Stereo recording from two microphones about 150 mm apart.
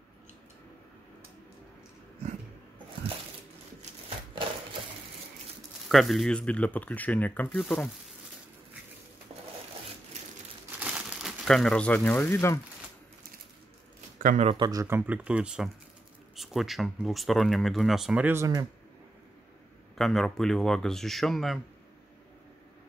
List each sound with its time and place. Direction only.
5.9 s speech: centre (ahead or behind)
10.8 s crumpling: 5° right (ahead or behind); by 12.5 s 15° left (ahead or behind)
14.1 s speech: 60° right (ahead or behind)
14.5 s speech: 25° right (ahead or behind); by 18.3 s 5° right (ahead or behind)
18.3 s speech: 20° right (ahead or behind)
20.0 s speech: centre (ahead or behind)